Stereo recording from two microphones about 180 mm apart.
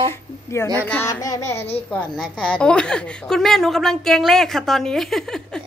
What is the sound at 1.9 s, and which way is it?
A woman's voice, 5° left (ahead or behind).